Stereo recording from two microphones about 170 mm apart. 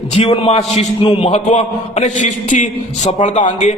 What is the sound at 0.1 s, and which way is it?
A man's voice, 35° left (ahead or behind).